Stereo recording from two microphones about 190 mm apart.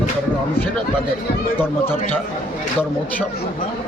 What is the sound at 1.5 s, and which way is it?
Speech, 10° left (ahead or behind).